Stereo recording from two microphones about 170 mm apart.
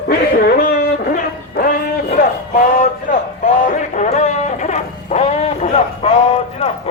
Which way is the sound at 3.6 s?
45° left (ahead or behind).